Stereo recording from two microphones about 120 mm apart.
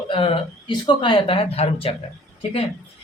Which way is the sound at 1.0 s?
45° left (ahead or behind).